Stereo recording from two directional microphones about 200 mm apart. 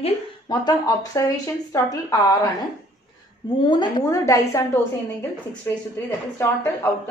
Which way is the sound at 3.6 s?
20° left (ahead or behind).